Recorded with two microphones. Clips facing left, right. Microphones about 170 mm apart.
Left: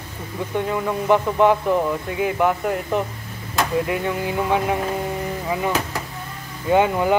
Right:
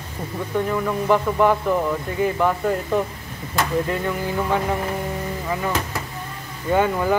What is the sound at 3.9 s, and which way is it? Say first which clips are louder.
Speech: left 1 dB; 15° left (ahead or behind).